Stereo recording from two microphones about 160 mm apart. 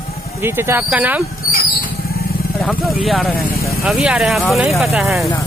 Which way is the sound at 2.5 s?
Centre (ahead or behind).